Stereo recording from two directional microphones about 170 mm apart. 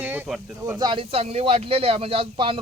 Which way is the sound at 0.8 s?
30° right (ahead or behind).